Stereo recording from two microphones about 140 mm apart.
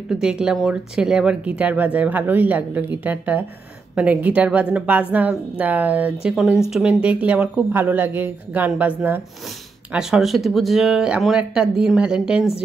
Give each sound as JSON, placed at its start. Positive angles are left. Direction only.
{"t": 0.1, "sound": "speech", "side_deg": -5}